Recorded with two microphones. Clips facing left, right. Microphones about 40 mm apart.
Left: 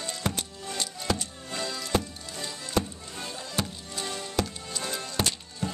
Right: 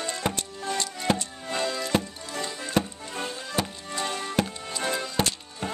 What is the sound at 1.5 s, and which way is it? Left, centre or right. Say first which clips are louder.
Music: right 5 dB; right.